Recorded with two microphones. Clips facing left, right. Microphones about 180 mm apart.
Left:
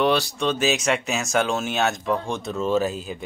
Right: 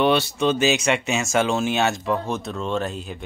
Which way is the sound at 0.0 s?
Centre (ahead or behind).